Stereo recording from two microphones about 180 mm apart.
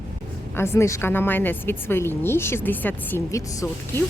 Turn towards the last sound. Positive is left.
turn(degrees=20)  # may be behind; listen again after turning